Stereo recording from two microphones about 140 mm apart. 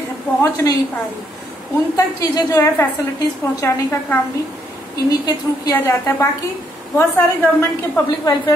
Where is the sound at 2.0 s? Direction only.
25° left (ahead or behind).